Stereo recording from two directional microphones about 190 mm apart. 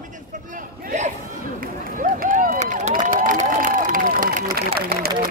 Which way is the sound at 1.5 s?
45° right (ahead or behind).